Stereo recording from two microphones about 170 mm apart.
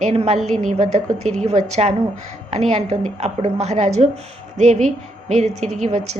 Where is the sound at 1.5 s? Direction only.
45° right (ahead or behind).